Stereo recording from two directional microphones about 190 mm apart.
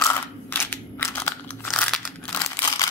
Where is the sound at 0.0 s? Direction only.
10° left (ahead or behind).